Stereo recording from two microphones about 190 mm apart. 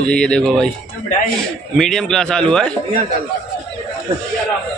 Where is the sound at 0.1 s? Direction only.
5° left (ahead or behind).